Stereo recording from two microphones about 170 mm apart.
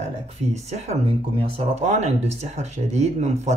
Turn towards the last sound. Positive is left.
turn(degrees=-40)  # may be behind; listen again after turning